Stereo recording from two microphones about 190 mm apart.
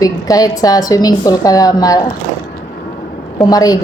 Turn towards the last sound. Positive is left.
turn(degrees=20)  # may be behind; listen again after turning